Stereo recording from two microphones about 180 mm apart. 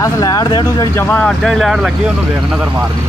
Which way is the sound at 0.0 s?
20° left (ahead or behind).